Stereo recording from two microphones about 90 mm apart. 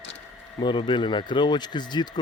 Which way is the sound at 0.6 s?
60° left (ahead or behind).